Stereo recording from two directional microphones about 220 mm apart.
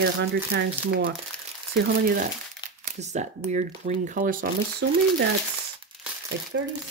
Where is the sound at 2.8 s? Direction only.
30° right (ahead or behind).